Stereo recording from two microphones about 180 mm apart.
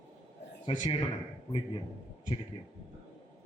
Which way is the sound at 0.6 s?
35° left (ahead or behind).